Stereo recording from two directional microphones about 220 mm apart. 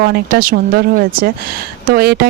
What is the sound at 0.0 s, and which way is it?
Speech, 45° right (ahead or behind).